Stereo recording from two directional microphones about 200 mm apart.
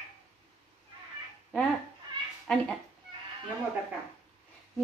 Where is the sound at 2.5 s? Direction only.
5° left (ahead or behind).